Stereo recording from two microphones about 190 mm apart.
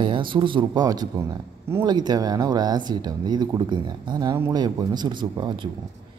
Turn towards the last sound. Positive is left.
turn(degrees=-25)  # may be behind; listen again after turning